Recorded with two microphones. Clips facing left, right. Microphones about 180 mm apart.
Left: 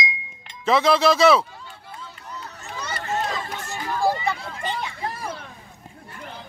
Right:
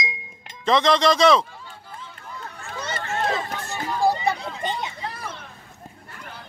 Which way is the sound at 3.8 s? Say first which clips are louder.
Right 1 dB; 20° right (ahead or behind).